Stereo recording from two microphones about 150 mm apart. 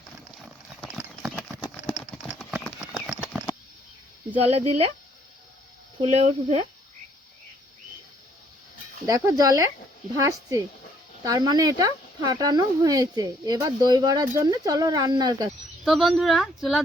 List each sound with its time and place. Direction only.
3.4 s a sound: 15° right (ahead or behind)
4.4 s speech: 40° right (ahead or behind)
6.0 s speech: 45° right (ahead or behind)
9.0 s speech: 25° right (ahead or behind)
15.8 s speech: centre (ahead or behind)